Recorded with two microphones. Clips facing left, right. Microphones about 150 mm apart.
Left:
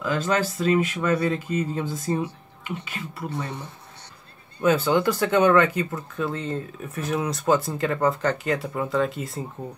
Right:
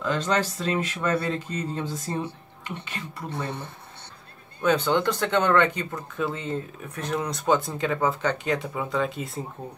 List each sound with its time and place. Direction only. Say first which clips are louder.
0.0 s speech: left 1 dB; 5° left (ahead or behind)
4.6 s speech: left 2 dB; 5° left (ahead or behind)